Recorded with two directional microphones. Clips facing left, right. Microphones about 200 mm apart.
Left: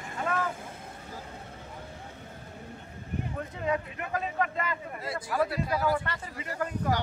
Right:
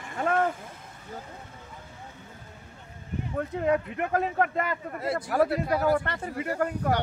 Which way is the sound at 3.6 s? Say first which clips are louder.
Right 5 dB; 55° right (ahead or behind).